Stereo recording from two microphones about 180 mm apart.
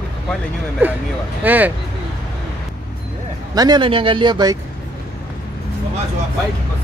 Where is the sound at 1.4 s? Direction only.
10° right (ahead or behind).